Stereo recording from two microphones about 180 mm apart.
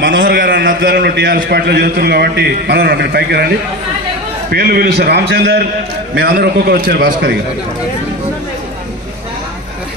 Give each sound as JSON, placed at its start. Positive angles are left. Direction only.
{"t": 0.2, "sound": "a man's voice", "side_deg": -70}
{"t": 4.5, "sound": "a man's voice", "side_deg": -60}